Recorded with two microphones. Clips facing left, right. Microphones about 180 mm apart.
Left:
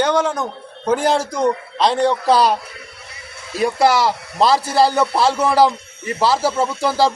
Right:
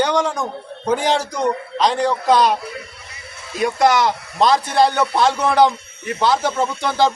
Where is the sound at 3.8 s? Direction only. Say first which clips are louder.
Right 1 dB; 5° left (ahead or behind).